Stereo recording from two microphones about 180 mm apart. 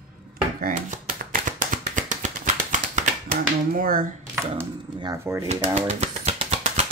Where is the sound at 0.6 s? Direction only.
50° right (ahead or behind).